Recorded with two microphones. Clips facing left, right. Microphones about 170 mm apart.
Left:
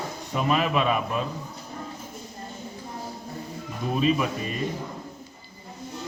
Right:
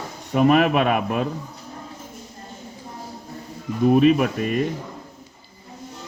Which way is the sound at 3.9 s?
60° right (ahead or behind).